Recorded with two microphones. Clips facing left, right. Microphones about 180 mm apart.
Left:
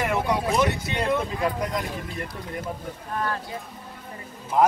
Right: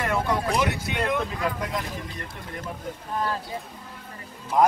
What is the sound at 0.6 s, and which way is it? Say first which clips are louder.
Speech: left 2 dB; centre (ahead or behind).